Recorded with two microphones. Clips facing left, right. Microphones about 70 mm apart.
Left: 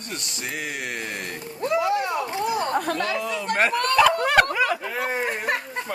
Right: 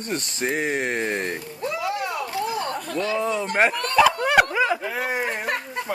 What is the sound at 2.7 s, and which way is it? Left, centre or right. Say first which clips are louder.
Speech: left 1 dB; left.